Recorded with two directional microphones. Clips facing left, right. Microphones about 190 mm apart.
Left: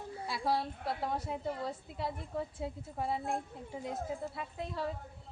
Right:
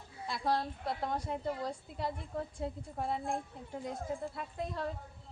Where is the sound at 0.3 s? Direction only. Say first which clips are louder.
Even; 5° left (ahead or behind).